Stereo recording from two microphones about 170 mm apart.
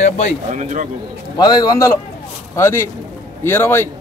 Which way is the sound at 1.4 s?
25° left (ahead or behind).